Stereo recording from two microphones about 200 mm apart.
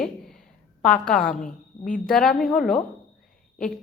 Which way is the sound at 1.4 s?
40° left (ahead or behind).